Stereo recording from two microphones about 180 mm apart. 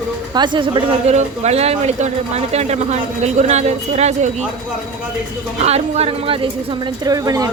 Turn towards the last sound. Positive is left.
turn(degrees=-20)  # may be behind; listen again after turning